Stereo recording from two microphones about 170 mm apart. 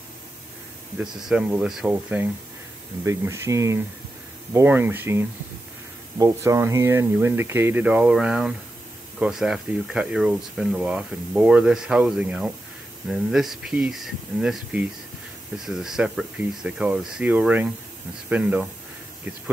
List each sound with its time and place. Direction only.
0.9 s speech: 5° right (ahead or behind)
3.1 s speech: 15° right (ahead or behind)